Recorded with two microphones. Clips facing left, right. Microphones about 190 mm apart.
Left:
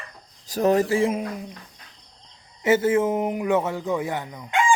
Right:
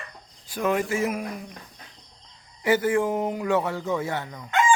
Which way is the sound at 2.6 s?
25° left (ahead or behind).